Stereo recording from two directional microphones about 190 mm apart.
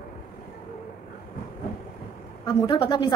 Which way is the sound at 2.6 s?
25° left (ahead or behind).